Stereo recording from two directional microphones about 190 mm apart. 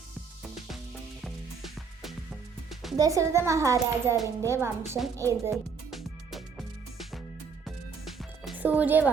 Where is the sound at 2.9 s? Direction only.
15° right (ahead or behind).